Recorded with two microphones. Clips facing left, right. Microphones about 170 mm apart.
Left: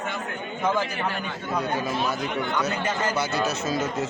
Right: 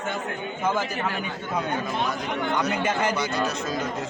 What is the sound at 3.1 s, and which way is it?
Speech, 5° left (ahead or behind).